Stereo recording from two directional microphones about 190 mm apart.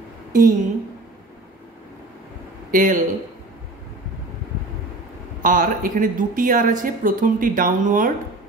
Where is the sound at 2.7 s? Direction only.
45° right (ahead or behind).